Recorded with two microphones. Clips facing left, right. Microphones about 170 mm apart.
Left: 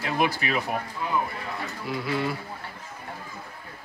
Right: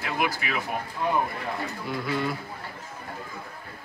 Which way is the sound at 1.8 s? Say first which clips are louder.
Left 1 dB; centre (ahead or behind).